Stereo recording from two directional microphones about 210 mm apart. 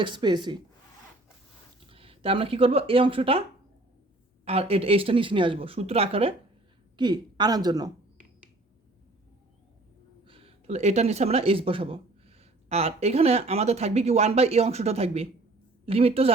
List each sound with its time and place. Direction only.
0.0 s speech: 20° right (ahead or behind)
1.9 s speech: 25° right (ahead or behind)
4.4 s speech: 30° right (ahead or behind)
10.2 s speech: 25° right (ahead or behind)